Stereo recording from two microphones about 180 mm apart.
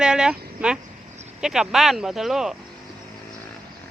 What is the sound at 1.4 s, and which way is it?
Speech, 5° right (ahead or behind).